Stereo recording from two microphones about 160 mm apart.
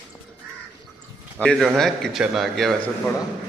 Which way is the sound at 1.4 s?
5° left (ahead or behind).